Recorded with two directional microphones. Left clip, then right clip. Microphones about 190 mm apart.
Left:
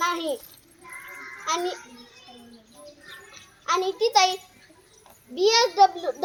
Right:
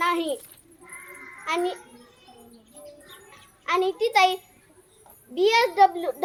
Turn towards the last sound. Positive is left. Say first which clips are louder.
# even
turn(degrees=-15)  # may be behind; listen again after turning